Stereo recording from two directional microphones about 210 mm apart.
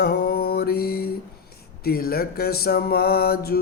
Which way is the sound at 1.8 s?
45° left (ahead or behind).